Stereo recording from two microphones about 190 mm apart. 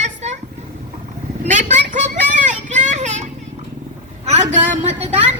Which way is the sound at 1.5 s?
40° right (ahead or behind).